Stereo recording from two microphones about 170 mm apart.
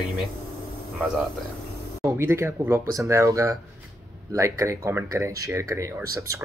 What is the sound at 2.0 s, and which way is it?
Speech, 15° right (ahead or behind).